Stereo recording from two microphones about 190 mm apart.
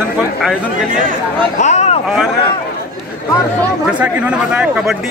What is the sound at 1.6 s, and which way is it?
Speech, 35° left (ahead or behind).